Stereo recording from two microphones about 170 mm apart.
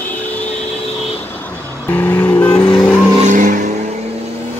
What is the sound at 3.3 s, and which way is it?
Vehicle, 45° right (ahead or behind).